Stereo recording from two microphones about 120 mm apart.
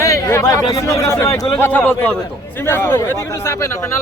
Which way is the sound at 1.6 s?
15° left (ahead or behind).